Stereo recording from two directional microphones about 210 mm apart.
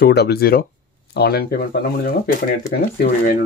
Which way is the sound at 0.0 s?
50° left (ahead or behind).